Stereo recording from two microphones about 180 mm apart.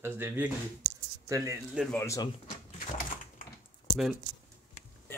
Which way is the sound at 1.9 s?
15° left (ahead or behind).